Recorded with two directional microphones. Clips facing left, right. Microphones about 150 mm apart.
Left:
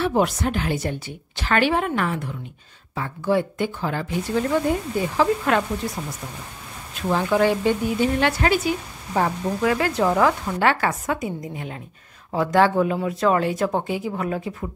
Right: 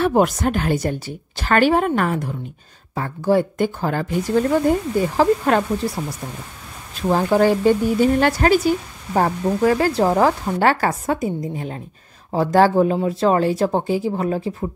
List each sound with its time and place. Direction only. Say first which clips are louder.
0.0 s a woman's voice: right 4 dB; 45° right (ahead or behind)
6.0 s speech: right 4 dB; 25° right (ahead or behind)
7.1 s speech: right 3 dB; 40° right (ahead or behind)